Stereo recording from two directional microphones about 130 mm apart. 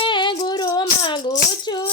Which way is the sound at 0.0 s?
35° left (ahead or behind).